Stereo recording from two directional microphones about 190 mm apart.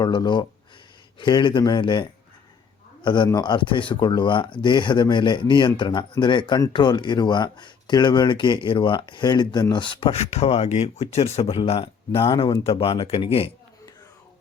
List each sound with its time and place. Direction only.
0.0 s speech: 25° left (ahead or behind)